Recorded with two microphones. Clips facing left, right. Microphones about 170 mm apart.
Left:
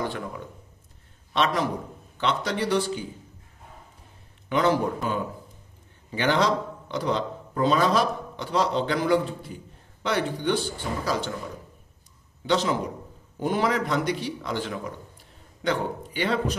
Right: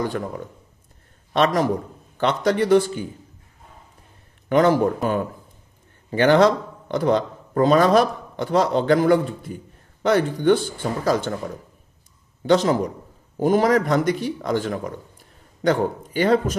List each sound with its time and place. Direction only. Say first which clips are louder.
1.3 s speech: right 6 dB; 45° right (ahead or behind)
4.5 s a man's voice: right 6 dB; 50° right (ahead or behind)